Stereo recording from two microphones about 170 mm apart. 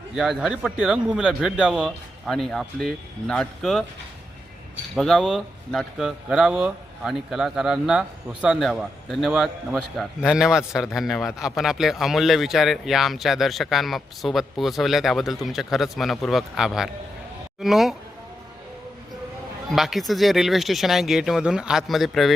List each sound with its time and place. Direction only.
0.2 s a man's voice: 5° right (ahead or behind)
4.9 s a man's voice: centre (ahead or behind)
19.7 s a man's voice: centre (ahead or behind)